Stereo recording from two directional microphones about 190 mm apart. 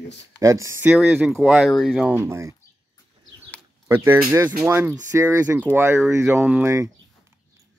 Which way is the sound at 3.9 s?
10° right (ahead or behind).